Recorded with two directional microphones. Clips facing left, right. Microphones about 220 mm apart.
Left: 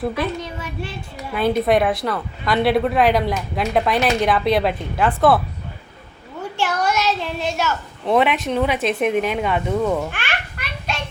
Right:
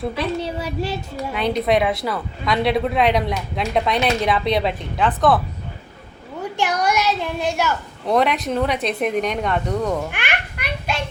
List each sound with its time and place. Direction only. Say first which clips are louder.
0.3 s a sound: right 5 dB; 35° right (ahead or behind)
1.4 s speech: left 2 dB; 5° left (ahead or behind)
6.6 s a child's voice: right 1 dB; 15° right (ahead or behind)
8.0 s speech: left 1 dB; 5° left (ahead or behind)
10.1 s babbling: right 1 dB; 15° right (ahead or behind)